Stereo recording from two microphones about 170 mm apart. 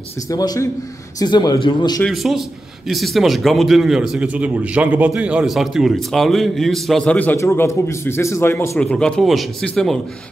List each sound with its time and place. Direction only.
0.3 s a man's voice: 20° left (ahead or behind)
2.0 s a man's voice: centre (ahead or behind)
8.7 s a man's voice: 5° left (ahead or behind)